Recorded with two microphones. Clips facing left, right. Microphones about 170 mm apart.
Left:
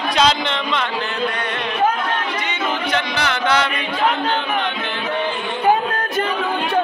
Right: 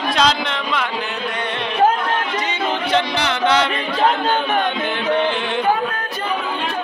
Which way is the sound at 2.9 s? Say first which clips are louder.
Right 2 dB; 25° right (ahead or behind).